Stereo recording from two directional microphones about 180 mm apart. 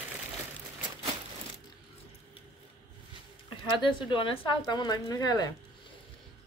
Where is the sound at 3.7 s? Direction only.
25° left (ahead or behind).